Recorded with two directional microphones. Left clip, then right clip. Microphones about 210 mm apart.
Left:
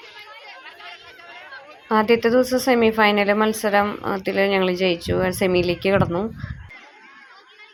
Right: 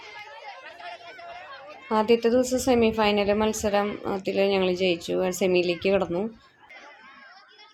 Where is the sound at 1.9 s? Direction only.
10° left (ahead or behind).